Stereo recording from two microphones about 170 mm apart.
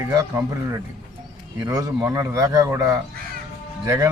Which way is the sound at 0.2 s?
20° right (ahead or behind).